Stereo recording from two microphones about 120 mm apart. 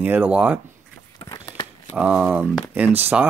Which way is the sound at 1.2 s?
30° left (ahead or behind).